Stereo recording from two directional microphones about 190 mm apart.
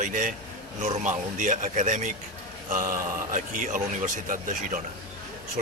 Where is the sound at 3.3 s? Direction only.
45° right (ahead or behind).